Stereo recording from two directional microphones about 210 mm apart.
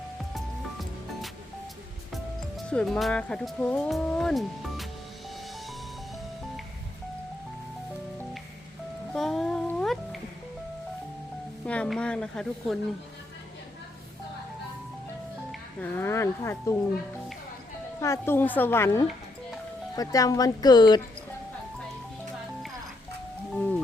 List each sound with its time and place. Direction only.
0.3 s music: centre (ahead or behind)
2.6 s speech: 5° left (ahead or behind)
9.1 s music: centre (ahead or behind)
11.6 s speech: 5° left (ahead or behind)
15.8 s a woman's voice: 10° left (ahead or behind)
18.0 s a woman's voice: 10° left (ahead or behind)